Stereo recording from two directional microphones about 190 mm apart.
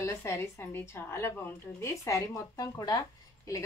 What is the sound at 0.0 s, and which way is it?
Speech, 15° left (ahead or behind).